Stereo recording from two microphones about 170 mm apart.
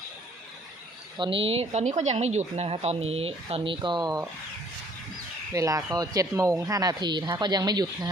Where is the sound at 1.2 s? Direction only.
30° right (ahead or behind).